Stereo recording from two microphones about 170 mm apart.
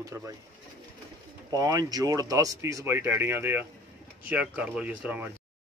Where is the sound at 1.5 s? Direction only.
20° right (ahead or behind).